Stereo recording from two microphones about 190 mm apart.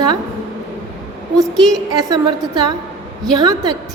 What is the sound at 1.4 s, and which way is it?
Speech, centre (ahead or behind).